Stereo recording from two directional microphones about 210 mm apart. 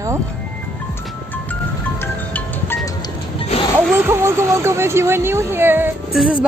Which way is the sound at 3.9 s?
10° right (ahead or behind).